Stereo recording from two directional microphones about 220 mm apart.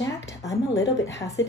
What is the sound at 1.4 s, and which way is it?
Speech, 55° left (ahead or behind).